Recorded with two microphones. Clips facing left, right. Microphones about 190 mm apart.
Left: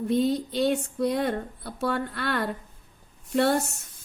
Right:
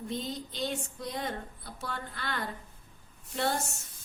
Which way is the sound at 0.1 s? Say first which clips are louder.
Left 14 dB; 60° left (ahead or behind).